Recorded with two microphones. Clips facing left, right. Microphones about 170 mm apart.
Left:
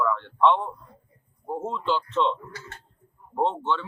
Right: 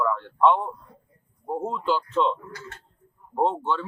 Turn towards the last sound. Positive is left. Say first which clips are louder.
# right 1 dB
turn(degrees=-5)  # may be behind; listen again after turning